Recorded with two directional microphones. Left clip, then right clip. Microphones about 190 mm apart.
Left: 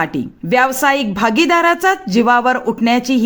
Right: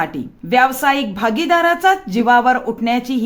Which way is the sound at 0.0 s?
30° left (ahead or behind).